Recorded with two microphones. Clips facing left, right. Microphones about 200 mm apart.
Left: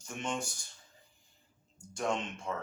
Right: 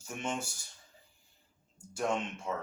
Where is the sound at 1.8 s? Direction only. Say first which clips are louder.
Right 1 dB; 5° right (ahead or behind).